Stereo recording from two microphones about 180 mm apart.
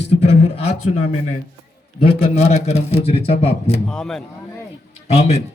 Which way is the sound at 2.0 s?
30° left (ahead or behind).